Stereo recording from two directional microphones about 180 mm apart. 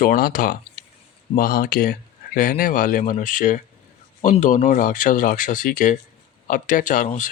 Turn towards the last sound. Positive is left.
turn(degrees=50)  # may be behind; listen again after turning